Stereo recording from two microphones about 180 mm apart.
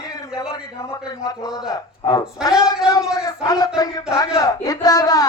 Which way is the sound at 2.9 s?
20° left (ahead or behind).